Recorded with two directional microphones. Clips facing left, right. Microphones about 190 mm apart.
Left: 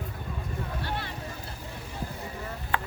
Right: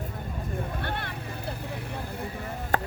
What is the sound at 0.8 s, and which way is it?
Vehicle, 55° right (ahead or behind).